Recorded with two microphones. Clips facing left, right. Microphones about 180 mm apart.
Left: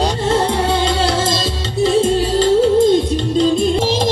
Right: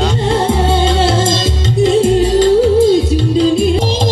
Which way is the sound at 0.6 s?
20° right (ahead or behind).